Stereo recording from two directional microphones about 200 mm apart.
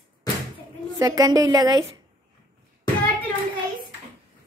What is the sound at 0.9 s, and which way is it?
Child singing, 20° right (ahead or behind).